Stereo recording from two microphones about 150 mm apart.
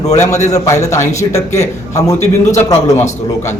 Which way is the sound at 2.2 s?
50° left (ahead or behind).